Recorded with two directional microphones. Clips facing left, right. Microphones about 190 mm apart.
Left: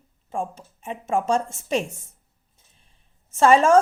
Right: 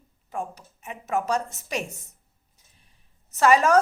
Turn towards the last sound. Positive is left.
turn(degrees=30)  # may be behind; listen again after turning